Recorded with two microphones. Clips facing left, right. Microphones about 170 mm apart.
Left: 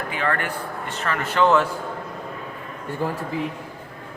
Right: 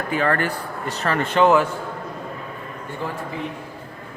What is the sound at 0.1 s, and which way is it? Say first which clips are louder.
Speech: right 5 dB; 40° right (ahead or behind).